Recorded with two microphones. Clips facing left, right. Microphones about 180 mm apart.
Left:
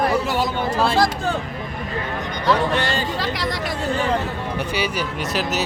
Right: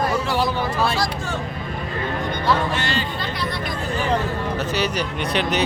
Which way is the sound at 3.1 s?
90° left.